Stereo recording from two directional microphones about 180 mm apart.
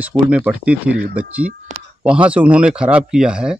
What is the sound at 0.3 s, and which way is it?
Speech, 5° right (ahead or behind).